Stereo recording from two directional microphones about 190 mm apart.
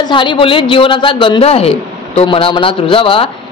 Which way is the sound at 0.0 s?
25° left (ahead or behind).